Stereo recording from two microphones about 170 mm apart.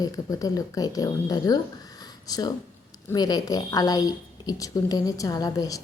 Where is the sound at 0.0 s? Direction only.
20° left (ahead or behind).